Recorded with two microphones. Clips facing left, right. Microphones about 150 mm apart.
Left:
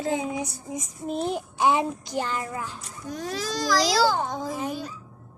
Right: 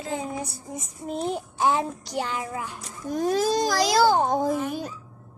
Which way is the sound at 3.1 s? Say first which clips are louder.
Right 8 dB; 50° right (ahead or behind).